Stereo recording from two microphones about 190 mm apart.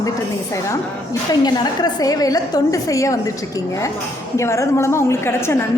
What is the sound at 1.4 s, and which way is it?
A woman's voice, 20° left (ahead or behind).